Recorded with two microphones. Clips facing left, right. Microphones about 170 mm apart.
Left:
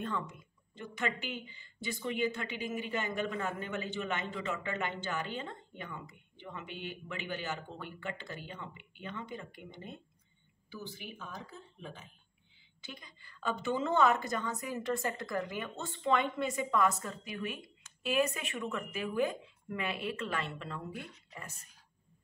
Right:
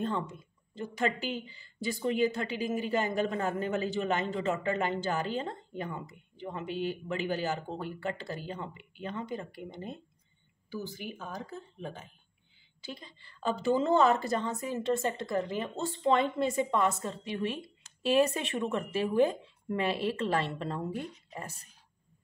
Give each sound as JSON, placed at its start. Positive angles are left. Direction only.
{"t": 0.0, "sound": "speech", "side_deg": -30}
{"t": 12.8, "sound": "a woman's voice", "side_deg": -30}